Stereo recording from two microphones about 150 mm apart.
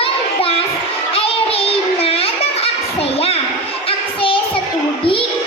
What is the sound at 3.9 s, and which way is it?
Child singing, 35° left (ahead or behind).